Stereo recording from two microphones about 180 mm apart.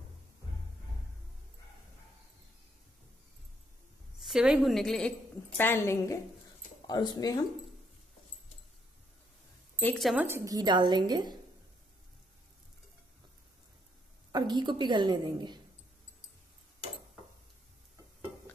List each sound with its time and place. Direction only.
4.2 s a woman's voice: 5° right (ahead or behind); by 7.3 s 20° left (ahead or behind)
9.8 s a woman's voice: 10° left (ahead or behind)
10.0 s a woman's voice: 10° right (ahead or behind)
14.3 s a woman's voice: 25° right (ahead or behind)